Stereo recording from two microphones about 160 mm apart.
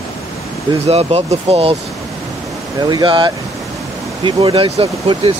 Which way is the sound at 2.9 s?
30° right (ahead or behind).